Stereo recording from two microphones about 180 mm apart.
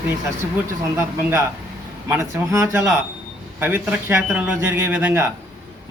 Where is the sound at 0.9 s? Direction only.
15° right (ahead or behind).